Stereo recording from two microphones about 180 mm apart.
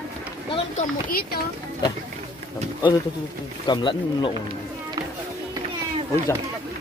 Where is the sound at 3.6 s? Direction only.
25° left (ahead or behind).